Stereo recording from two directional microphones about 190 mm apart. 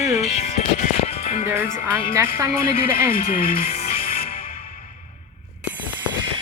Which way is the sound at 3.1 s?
45° left (ahead or behind).